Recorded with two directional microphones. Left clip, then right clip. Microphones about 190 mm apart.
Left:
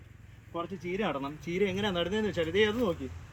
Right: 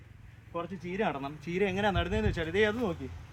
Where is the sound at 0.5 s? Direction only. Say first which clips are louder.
Left 1 dB; 10° right (ahead or behind).